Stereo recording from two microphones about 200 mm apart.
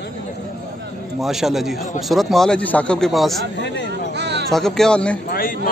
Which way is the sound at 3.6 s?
60° left (ahead or behind).